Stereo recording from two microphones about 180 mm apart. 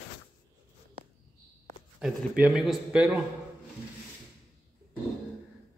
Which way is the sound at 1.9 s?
5° right (ahead or behind).